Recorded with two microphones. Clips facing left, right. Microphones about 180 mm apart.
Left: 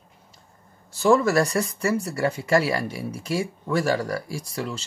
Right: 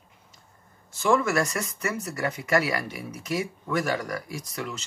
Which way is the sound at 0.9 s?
35° left (ahead or behind).